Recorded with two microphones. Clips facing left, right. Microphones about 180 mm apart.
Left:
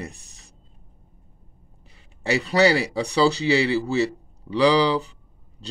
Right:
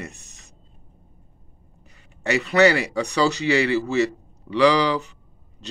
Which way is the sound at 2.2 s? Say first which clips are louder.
Right 2 dB; 35° left (ahead or behind).